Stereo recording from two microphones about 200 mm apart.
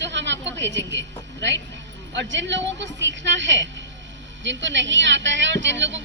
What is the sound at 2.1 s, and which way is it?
A woman's voice, 65° right (ahead or behind).